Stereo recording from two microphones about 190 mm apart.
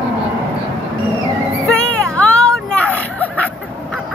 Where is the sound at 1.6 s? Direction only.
5° left (ahead or behind).